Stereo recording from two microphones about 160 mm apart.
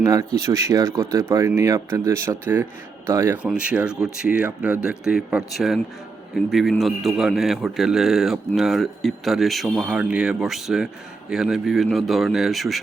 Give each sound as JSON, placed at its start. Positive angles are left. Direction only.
{"t": 0.0, "sound": "a man's voice", "side_deg": -20}